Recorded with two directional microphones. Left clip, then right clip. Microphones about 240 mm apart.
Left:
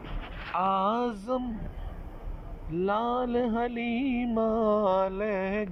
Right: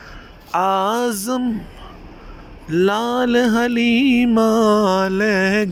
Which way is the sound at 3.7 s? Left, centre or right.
Right.